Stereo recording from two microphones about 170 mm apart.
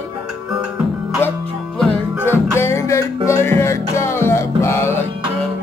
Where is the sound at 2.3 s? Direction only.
15° left (ahead or behind).